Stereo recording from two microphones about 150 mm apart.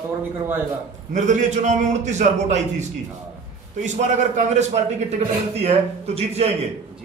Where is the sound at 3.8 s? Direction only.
55° right (ahead or behind).